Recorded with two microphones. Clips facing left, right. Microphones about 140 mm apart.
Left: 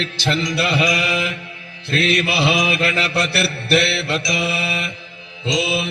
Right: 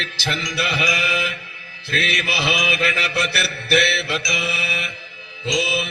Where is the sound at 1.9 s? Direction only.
35° left (ahead or behind).